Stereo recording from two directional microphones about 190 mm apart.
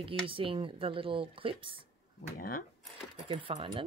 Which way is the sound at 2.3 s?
50° left (ahead or behind).